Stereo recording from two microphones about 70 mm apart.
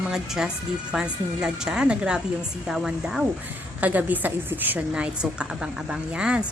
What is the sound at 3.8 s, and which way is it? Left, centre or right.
A woman's voice, right.